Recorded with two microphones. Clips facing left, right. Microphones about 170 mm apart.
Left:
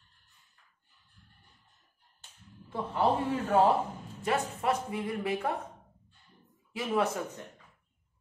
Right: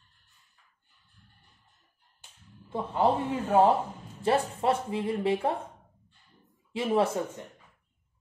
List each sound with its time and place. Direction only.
2.7 s speech: 20° right (ahead or behind)
6.7 s speech: 25° right (ahead or behind)